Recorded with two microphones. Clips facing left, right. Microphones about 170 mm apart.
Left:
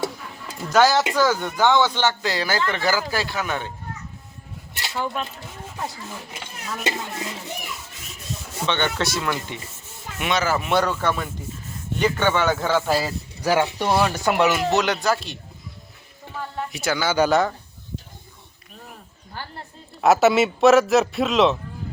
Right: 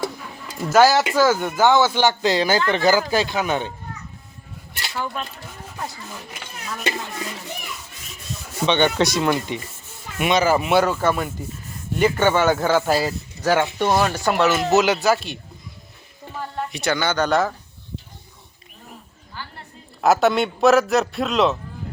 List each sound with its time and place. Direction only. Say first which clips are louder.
0.7 s a man's voice: right 2 dB; 5° right (ahead or behind)
4.7 s a sound: left 1 dB; 20° left (ahead or behind)
6.8 s speech: right 1 dB; 25° left (ahead or behind)
8.6 s a man's voice: right 6 dB; 15° right (ahead or behind); by 13.1 s centre (ahead or behind)
13.4 s speech: right 1 dB; 10° left (ahead or behind)
14.7 s a man's voice: right 4 dB; 5° right (ahead or behind)
16.7 s a man's voice: left 1 dB; 5° left (ahead or behind)
20.0 s a man's voice: left 1 dB; centre (ahead or behind)